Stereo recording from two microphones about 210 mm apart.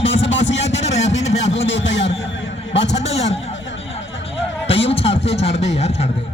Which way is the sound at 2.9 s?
30° left (ahead or behind).